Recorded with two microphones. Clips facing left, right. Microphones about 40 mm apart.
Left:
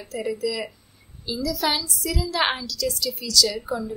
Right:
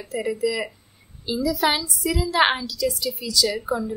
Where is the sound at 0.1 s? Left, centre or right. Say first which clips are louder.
Right 3 dB; centre.